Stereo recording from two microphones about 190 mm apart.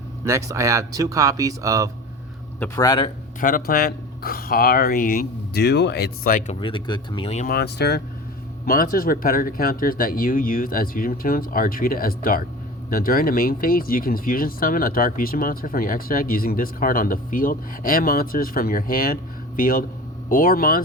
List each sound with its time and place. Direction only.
0.3 s speech: 15° right (ahead or behind)
2.6 s speech: 15° left (ahead or behind)
3.4 s speech: 45° left (ahead or behind)
6.5 s speech: 25° left (ahead or behind)
7.4 s speech: 60° left (ahead or behind)
8.6 s speech: 50° left (ahead or behind)